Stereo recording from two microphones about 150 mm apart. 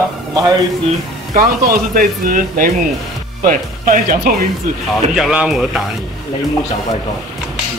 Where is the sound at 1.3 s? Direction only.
80° right.